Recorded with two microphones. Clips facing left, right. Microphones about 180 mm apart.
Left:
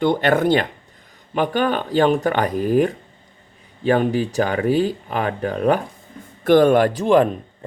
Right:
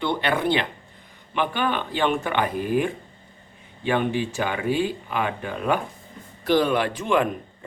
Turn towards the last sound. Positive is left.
turn(degrees=35)  # may be behind; listen again after turning